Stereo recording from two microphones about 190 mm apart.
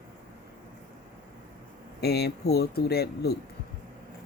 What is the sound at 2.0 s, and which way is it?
Speech, 60° left (ahead or behind).